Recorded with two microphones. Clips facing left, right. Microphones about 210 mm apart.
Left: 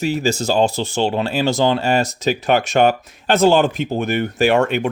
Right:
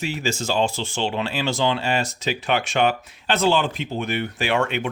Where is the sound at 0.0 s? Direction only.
40° left (ahead or behind).